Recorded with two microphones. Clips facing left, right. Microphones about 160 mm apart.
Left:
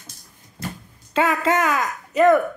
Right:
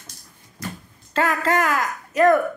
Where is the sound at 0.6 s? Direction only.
30° left (ahead or behind).